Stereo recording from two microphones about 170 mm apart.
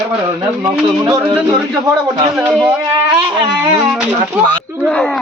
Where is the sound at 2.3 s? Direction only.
10° right (ahead or behind).